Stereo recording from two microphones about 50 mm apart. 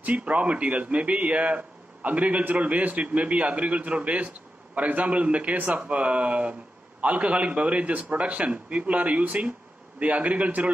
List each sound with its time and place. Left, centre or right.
0.0 s a man's voice: right